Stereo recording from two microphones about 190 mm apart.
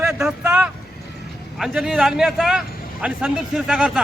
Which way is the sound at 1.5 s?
Centre (ahead or behind).